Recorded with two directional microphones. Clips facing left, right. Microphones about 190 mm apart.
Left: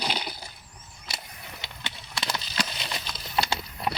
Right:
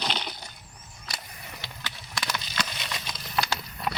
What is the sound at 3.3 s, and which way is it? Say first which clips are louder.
Horse: left 2 dB; 25° left (ahead or behind).